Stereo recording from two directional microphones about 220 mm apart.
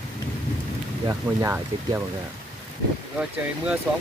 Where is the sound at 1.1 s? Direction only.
15° right (ahead or behind).